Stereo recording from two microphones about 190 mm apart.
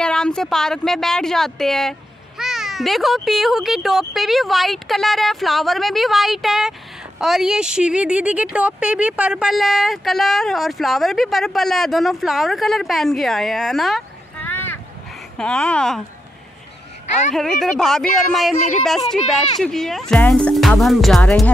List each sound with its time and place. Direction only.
0.0 s speech: 5° left (ahead or behind)
17.3 s speech: centre (ahead or behind)